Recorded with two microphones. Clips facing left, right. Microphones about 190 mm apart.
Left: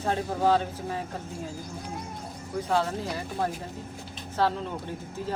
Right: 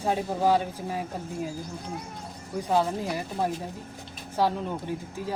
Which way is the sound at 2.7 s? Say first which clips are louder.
Right 2 dB; 15° right (ahead or behind).